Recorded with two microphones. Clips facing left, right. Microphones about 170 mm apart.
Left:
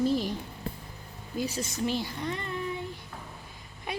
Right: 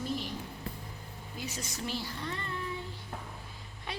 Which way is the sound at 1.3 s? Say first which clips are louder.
Left 9 dB; 35° left (ahead or behind).